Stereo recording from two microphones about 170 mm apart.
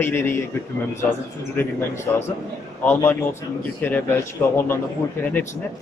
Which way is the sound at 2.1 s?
15° left (ahead or behind).